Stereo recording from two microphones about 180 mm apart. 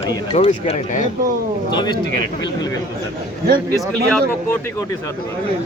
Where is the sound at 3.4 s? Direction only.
55° right (ahead or behind).